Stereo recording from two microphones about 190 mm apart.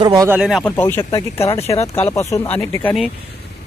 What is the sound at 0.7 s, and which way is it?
Speech, 10° left (ahead or behind).